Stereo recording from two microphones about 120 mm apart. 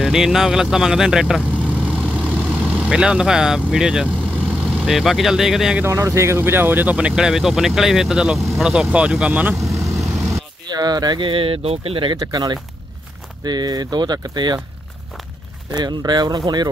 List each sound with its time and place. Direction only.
0.0 s speech: 5° right (ahead or behind)
2.2 s vehicle: 5° left (ahead or behind)
2.8 s speech: 5° right (ahead or behind)
5.8 s speech: 25° right (ahead or behind)
9.6 s vehicle: centre (ahead or behind)
10.7 s speech: 35° right (ahead or behind)
12.2 s speech: 35° right (ahead or behind)
15.7 s speech: 35° right (ahead or behind)